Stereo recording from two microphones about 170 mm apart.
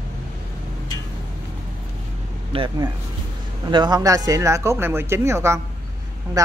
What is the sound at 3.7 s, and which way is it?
A man's voice, 25° right (ahead or behind).